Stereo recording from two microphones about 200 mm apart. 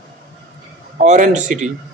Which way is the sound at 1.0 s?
35° right (ahead or behind).